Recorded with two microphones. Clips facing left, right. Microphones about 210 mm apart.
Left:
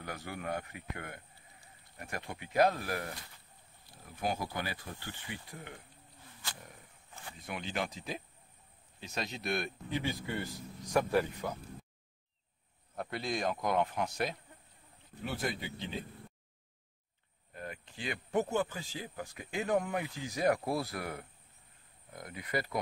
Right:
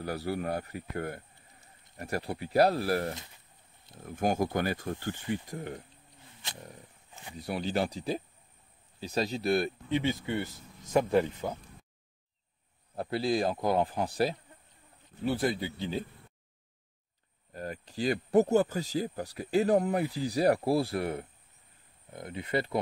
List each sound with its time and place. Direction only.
0.0 s speech: 35° right (ahead or behind)
4.0 s speech: 50° right (ahead or behind)
7.3 s speech: 35° right (ahead or behind)
9.9 s speech: 20° right (ahead or behind)
12.9 s speech: 30° right (ahead or behind)
17.5 s speech: 40° right (ahead or behind)